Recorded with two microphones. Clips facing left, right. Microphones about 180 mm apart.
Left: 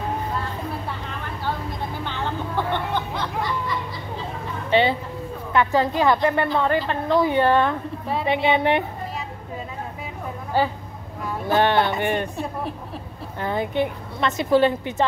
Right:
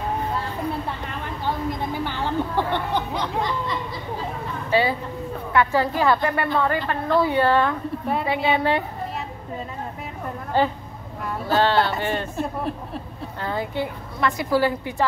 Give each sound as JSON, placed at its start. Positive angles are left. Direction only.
{"t": 2.0, "sound": "music", "side_deg": -10}
{"t": 4.6, "sound": "a sound", "side_deg": 25}
{"t": 5.5, "sound": "a woman's voice", "side_deg": 20}
{"t": 10.5, "sound": "a woman's voice", "side_deg": 10}
{"t": 12.4, "sound": "speech", "side_deg": 0}
{"t": 13.4, "sound": "a woman's voice", "side_deg": 20}